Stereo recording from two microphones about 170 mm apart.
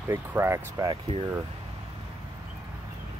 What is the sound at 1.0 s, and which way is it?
Speech, 35° right (ahead or behind).